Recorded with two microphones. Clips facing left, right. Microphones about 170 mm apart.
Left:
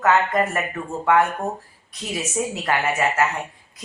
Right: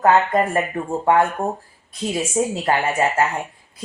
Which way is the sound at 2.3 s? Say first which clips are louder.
Right 3 dB; 30° right (ahead or behind).